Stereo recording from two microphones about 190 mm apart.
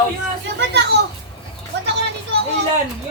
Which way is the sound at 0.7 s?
60° right (ahead or behind).